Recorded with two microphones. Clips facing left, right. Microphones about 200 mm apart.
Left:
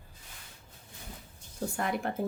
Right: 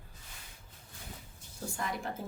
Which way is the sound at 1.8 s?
60° left (ahead or behind).